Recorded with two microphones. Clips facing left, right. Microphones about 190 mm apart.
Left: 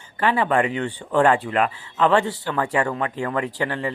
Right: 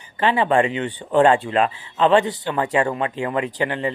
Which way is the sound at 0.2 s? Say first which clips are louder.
Right 2 dB; 25° right (ahead or behind).